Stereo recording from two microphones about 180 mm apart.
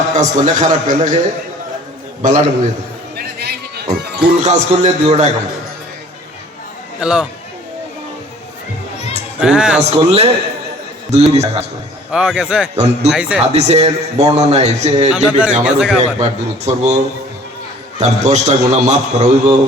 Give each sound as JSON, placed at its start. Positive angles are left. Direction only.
{"t": 0.2, "sound": "a man's voice", "side_deg": -45}
{"t": 2.2, "sound": "a man's voice", "side_deg": -45}
{"t": 3.2, "sound": "music", "side_deg": -65}
{"t": 4.4, "sound": "a man's voice", "side_deg": -40}
{"t": 7.0, "sound": "a man's voice", "side_deg": -5}
{"t": 9.4, "sound": "a man's voice", "side_deg": -5}
{"t": 9.9, "sound": "a man's voice", "side_deg": -35}
{"t": 12.1, "sound": "a man's voice", "side_deg": -5}
{"t": 12.7, "sound": "a man's voice", "side_deg": -35}
{"t": 13.1, "sound": "a man's voice", "side_deg": -5}
{"t": 13.4, "sound": "a man's voice", "side_deg": -35}
{"t": 15.1, "sound": "a man's voice", "side_deg": -5}
{"t": 16.2, "sound": "a man's voice", "side_deg": -40}
{"t": 18.0, "sound": "a man's voice", "side_deg": -40}